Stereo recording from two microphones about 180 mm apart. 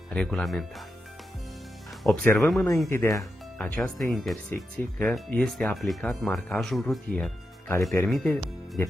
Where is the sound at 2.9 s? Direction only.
15° left (ahead or behind).